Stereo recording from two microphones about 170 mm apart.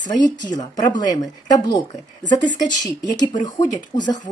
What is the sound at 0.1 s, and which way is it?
Speech, 25° left (ahead or behind).